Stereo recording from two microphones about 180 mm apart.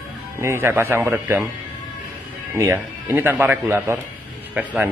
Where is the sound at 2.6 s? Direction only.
15° right (ahead or behind).